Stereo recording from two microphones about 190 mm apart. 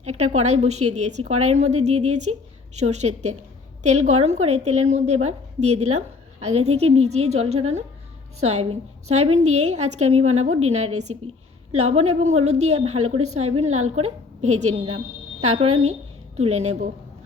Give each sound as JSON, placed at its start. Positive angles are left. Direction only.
{"t": 0.0, "sound": "a woman's voice", "side_deg": -35}